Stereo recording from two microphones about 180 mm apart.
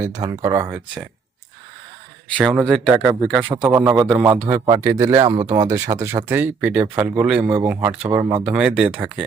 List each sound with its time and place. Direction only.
0.0 s speech: 20° right (ahead or behind)
2.4 s speech: centre (ahead or behind)
2.9 s speech: 10° right (ahead or behind)